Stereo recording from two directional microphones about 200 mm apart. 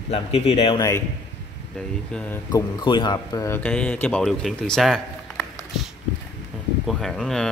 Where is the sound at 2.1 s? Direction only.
5° left (ahead or behind).